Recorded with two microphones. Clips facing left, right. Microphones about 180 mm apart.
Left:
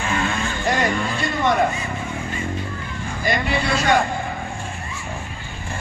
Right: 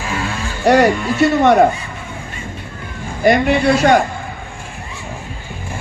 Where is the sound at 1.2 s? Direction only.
65° right (ahead or behind).